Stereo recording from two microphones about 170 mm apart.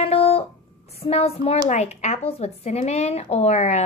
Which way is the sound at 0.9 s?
35° left (ahead or behind).